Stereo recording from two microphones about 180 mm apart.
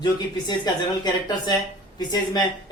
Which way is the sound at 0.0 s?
25° left (ahead or behind).